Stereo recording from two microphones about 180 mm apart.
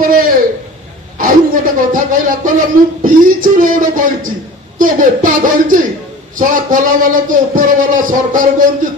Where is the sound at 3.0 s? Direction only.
50° right (ahead or behind).